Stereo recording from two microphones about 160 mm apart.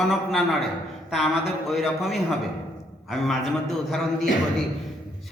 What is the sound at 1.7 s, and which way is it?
Speech, centre (ahead or behind).